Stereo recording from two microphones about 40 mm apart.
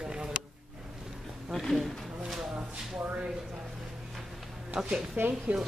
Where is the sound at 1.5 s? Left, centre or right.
Centre.